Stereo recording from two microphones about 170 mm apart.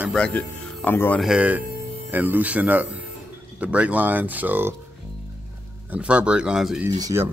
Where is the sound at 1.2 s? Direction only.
5° right (ahead or behind).